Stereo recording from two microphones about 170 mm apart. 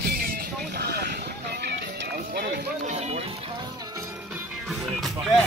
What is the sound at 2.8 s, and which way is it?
Music, 40° right (ahead or behind).